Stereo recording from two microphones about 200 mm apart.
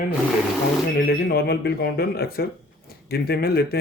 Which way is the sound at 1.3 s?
55° left (ahead or behind).